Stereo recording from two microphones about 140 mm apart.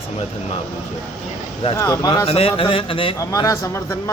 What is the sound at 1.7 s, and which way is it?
Speech, 25° left (ahead or behind).